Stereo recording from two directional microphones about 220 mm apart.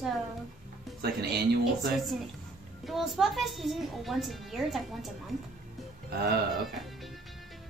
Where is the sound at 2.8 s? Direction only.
Centre (ahead or behind).